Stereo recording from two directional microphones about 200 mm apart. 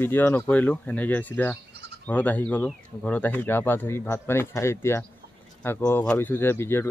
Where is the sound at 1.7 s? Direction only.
55° right (ahead or behind).